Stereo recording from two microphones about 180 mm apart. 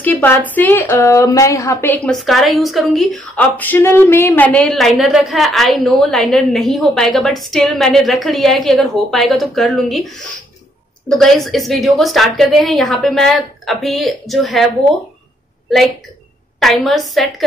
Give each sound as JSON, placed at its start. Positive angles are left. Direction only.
{"t": 0.0, "sound": "a woman's voice", "side_deg": 10}
{"t": 2.1, "sound": "a woman's voice", "side_deg": 0}
{"t": 11.1, "sound": "a woman's voice", "side_deg": 0}
{"t": 16.5, "sound": "a woman's voice", "side_deg": 0}